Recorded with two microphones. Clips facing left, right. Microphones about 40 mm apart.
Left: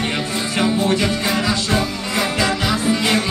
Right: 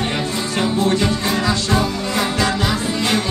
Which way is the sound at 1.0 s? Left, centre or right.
Left.